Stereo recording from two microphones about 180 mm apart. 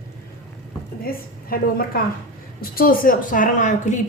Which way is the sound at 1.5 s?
55° left (ahead or behind).